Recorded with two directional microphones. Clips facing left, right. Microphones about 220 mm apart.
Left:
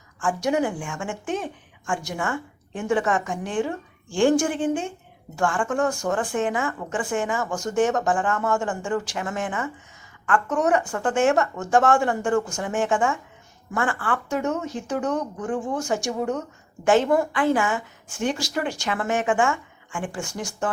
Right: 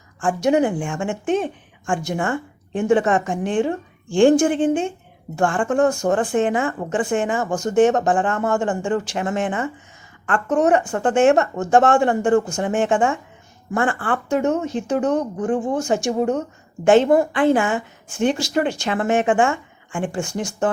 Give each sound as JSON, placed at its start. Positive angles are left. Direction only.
{"t": 0.2, "sound": "speech", "side_deg": -25}